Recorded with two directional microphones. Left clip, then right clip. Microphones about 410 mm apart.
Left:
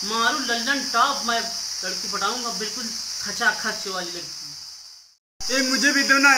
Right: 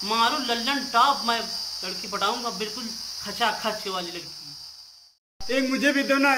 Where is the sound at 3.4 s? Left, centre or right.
Centre.